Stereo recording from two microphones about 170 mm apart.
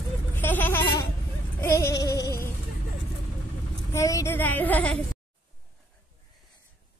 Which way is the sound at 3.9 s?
20° left (ahead or behind).